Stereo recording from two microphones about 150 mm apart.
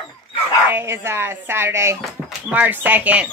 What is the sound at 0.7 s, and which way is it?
Speech, 15° right (ahead or behind).